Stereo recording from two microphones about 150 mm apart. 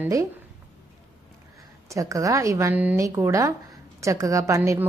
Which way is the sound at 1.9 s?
20° right (ahead or behind).